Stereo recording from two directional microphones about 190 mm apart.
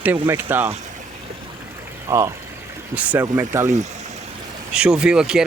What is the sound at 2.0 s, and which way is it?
Speech, 15° right (ahead or behind).